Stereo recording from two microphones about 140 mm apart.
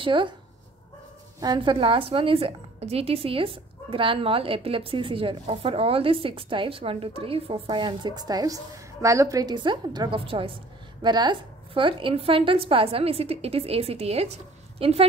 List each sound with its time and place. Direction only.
0.0 s a woman's voice: 35° right (ahead or behind)
1.4 s a woman's voice: 35° right (ahead or behind)